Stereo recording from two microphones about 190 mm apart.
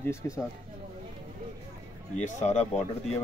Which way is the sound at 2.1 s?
35° left (ahead or behind).